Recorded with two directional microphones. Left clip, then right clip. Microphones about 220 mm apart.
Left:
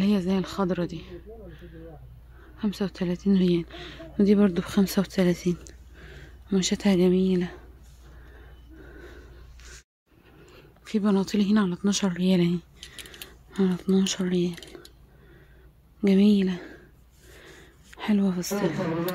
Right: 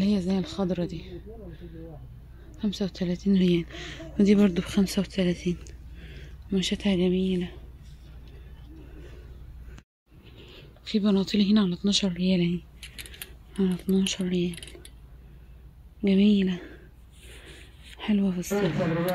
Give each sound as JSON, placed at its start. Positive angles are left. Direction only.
{"t": 0.0, "sound": "speech", "side_deg": 15}
{"t": 10.4, "sound": "speech", "side_deg": 5}
{"t": 16.0, "sound": "speech", "side_deg": 10}
{"t": 17.9, "sound": "speech", "side_deg": 10}